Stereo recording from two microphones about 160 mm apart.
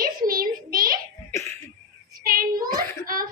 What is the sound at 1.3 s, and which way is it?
Cough, 20° left (ahead or behind).